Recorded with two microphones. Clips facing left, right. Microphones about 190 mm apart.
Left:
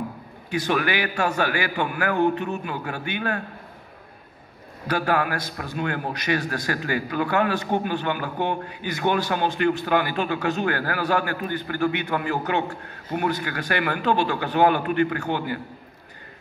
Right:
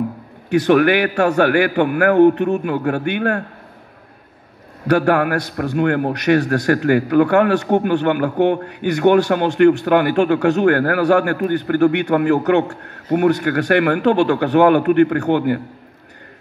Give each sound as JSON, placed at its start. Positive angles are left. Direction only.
{"t": 0.5, "sound": "a man's voice", "side_deg": -65}
{"t": 4.8, "sound": "a man's voice", "side_deg": -65}